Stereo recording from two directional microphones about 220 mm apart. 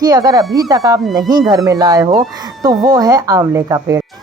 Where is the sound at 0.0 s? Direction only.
15° right (ahead or behind).